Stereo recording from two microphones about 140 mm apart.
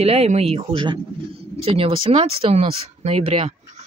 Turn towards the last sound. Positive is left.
turn(degrees=-50)  # may be behind; listen again after turning